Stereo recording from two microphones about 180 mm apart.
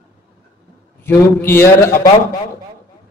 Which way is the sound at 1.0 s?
15° left (ahead or behind).